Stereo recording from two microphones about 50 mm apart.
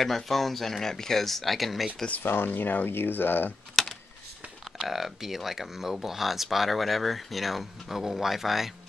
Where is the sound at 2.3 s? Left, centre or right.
Left.